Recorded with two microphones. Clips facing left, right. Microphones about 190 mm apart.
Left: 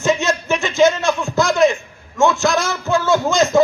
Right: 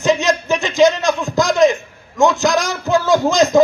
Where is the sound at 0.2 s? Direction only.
15° right (ahead or behind).